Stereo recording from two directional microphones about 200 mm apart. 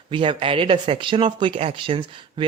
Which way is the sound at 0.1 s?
25° right (ahead or behind).